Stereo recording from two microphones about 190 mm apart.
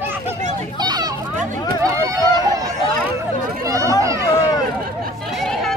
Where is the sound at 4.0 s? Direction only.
15° right (ahead or behind).